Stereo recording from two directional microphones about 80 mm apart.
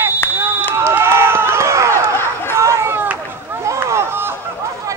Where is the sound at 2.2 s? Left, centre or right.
Left.